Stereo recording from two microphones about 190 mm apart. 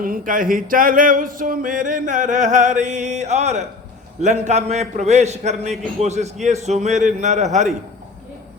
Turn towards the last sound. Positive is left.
turn(degrees=-40)  # may be behind; listen again after turning